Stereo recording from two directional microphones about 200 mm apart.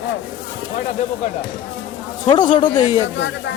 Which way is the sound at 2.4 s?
40° left (ahead or behind).